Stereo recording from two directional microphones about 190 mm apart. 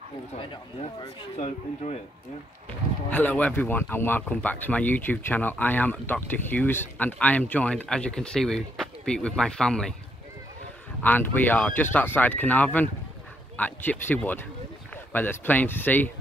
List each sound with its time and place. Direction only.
1.0 s speech: 35° left (ahead or behind)
3.1 s speech: 10° left (ahead or behind)
11.0 s speech: 10° left (ahead or behind)